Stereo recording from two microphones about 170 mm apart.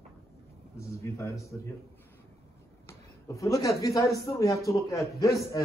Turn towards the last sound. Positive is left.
turn(degrees=20)  # may be behind; listen again after turning